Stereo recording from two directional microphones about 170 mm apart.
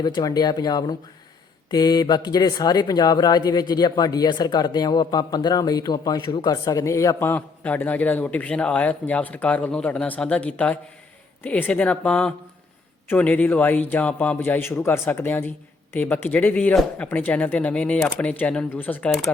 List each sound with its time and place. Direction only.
0.0 s a man's voice: 25° left (ahead or behind); by 19.3 s 5° left (ahead or behind)